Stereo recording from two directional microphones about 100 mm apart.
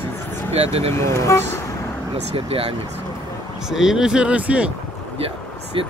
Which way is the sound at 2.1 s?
75° right (ahead or behind).